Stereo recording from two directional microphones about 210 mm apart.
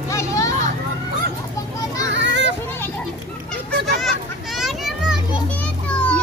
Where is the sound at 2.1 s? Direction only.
60° right (ahead or behind).